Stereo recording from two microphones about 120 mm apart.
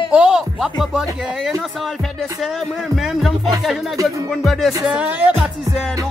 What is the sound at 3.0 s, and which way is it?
Speech, centre (ahead or behind).